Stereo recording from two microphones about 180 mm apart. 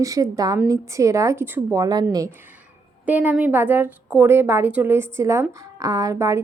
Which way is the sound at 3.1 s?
10° right (ahead or behind).